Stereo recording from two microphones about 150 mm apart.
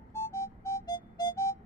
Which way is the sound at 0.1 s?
15° left (ahead or behind).